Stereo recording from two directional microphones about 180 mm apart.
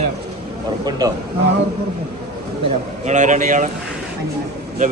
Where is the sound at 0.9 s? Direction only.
20° right (ahead or behind).